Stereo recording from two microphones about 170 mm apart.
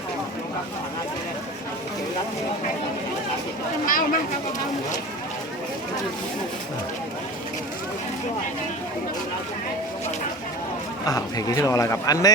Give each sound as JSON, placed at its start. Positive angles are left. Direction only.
{"t": 3.8, "sound": "speech", "side_deg": 55}
{"t": 11.0, "sound": "a man's voice", "side_deg": 20}